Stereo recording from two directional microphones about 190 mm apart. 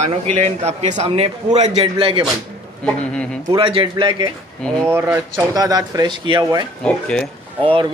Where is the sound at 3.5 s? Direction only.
25° right (ahead or behind).